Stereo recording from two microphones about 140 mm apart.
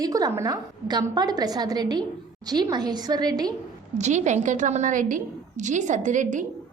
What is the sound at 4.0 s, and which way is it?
A woman's voice, 55° right (ahead or behind).